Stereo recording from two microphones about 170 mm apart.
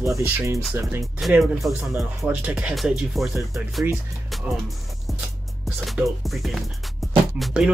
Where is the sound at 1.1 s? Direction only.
Centre (ahead or behind).